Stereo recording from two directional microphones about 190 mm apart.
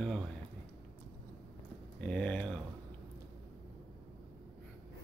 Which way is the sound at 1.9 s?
5° left (ahead or behind).